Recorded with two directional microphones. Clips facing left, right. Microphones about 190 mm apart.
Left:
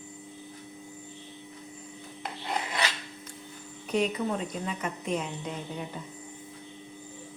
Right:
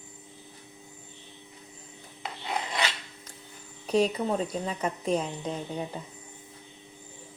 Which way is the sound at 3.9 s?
35° right (ahead or behind).